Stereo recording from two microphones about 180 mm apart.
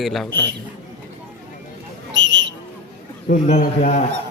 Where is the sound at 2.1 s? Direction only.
90° right.